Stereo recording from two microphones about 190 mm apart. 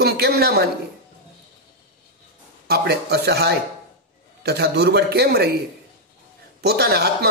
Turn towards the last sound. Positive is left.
turn(degrees=-60)  # may be behind; listen again after turning